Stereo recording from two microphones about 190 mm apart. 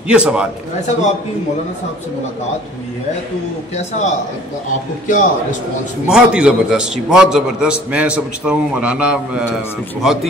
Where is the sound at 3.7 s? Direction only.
35° left (ahead or behind).